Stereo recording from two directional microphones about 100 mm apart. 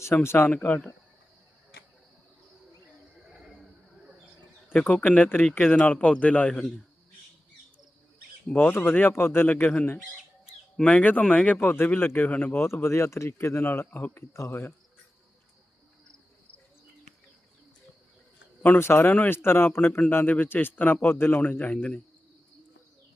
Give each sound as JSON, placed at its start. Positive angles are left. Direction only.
{"t": 0.0, "sound": "a man's voice", "side_deg": 25}
{"t": 3.3, "sound": "a sound", "side_deg": 0}
{"t": 4.7, "sound": "speech", "side_deg": 15}
{"t": 8.5, "sound": "a man's voice", "side_deg": 20}
{"t": 10.8, "sound": "a man's voice", "side_deg": 10}
{"t": 18.6, "sound": "a man's voice", "side_deg": 20}